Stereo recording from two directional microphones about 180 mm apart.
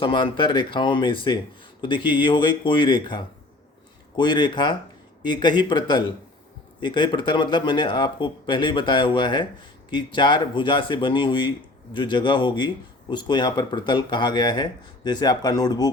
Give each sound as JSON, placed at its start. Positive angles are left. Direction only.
{"t": 0.0, "sound": "speech", "side_deg": 25}